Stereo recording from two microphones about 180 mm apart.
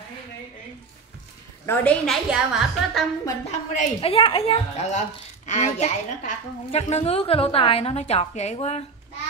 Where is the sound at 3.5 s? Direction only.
40° left (ahead or behind).